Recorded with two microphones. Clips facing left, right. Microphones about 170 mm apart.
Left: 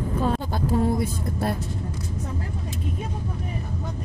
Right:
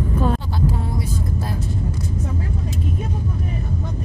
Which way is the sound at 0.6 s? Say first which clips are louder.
Left 4 dB; 45° left (ahead or behind).